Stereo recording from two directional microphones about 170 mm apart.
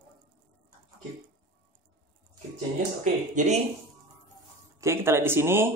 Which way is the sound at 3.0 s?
45° right (ahead or behind).